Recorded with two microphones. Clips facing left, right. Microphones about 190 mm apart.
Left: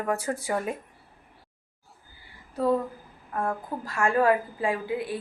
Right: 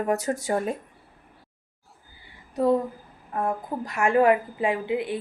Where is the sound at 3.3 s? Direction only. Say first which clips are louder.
Right 2 dB; 20° right (ahead or behind).